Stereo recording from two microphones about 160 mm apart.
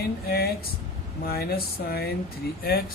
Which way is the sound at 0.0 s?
75° left (ahead or behind).